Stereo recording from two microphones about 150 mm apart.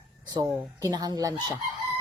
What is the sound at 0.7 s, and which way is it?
Speech, 25° right (ahead or behind).